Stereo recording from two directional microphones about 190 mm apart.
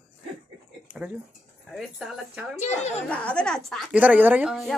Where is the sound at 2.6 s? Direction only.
35° left (ahead or behind).